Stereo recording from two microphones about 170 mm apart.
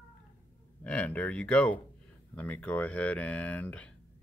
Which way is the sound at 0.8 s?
10° left (ahead or behind).